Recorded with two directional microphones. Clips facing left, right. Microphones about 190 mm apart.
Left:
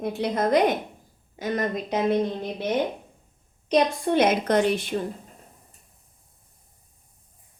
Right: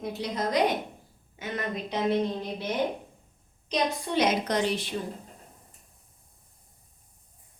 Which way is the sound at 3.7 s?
55° left (ahead or behind).